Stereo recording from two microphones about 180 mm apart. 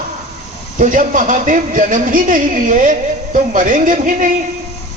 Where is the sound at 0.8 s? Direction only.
50° right (ahead or behind).